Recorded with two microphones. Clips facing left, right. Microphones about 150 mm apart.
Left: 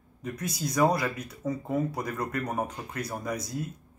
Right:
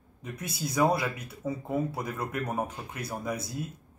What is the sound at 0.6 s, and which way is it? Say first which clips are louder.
Speech: left 1 dB; 5° right (ahead or behind).